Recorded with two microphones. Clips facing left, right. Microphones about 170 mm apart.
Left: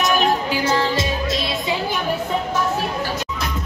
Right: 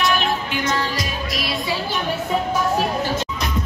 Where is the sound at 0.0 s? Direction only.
40° left (ahead or behind); by 1.8 s 25° left (ahead or behind).